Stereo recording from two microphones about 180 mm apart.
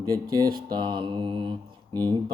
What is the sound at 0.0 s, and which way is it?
Mantra, 20° right (ahead or behind).